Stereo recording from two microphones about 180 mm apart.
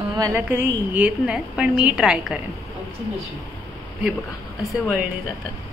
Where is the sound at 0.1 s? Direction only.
20° right (ahead or behind).